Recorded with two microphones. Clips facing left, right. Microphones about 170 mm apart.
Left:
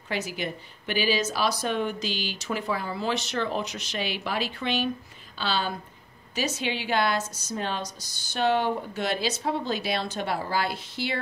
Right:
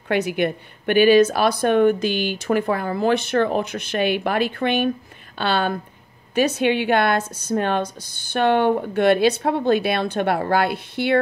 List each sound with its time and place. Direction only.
0.1 s a woman's voice: 60° right (ahead or behind)